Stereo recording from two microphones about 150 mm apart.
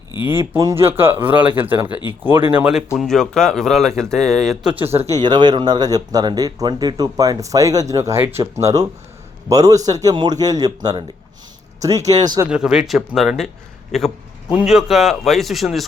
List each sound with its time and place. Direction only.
0.3 s speech: 20° right (ahead or behind)
3.0 s speech: 5° left (ahead or behind)
4.7 s speech: 15° right (ahead or behind)
11.8 s speech: 20° right (ahead or behind)
12.5 s speech: 5° right (ahead or behind)
14.5 s speech: 5° right (ahead or behind)